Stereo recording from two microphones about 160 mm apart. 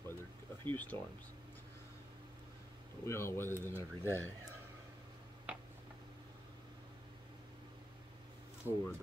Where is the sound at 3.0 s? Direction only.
15° left (ahead or behind).